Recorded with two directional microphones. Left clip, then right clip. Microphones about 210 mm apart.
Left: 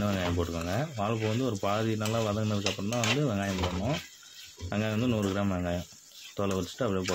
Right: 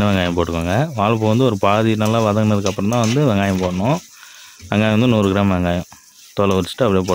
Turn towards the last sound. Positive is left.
turn(degrees=-55)  # may be behind; listen again after turning